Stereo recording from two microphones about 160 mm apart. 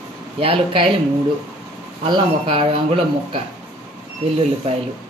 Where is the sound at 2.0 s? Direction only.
30° right (ahead or behind).